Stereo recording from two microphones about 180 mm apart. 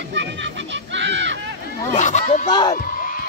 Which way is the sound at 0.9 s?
85° right.